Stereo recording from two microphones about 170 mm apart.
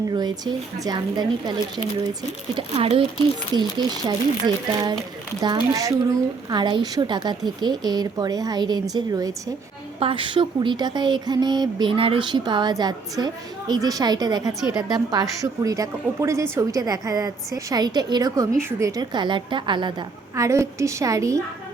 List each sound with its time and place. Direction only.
0.1 s speech: 25° right (ahead or behind)
10.0 s speech: 30° right (ahead or behind)